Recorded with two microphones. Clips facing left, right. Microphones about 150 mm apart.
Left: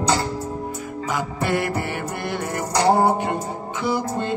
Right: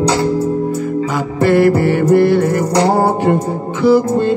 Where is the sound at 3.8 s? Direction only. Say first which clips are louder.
Right 13 dB; 20° left (ahead or behind).